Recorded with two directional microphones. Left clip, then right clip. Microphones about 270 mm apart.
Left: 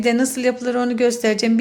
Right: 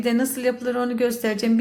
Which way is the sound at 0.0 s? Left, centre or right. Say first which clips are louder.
Left 4 dB; left.